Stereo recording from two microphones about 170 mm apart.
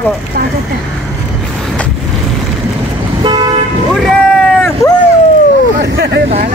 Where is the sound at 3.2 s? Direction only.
25° right (ahead or behind).